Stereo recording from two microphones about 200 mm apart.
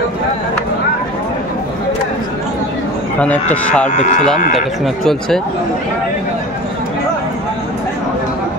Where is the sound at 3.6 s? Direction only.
5° left (ahead or behind).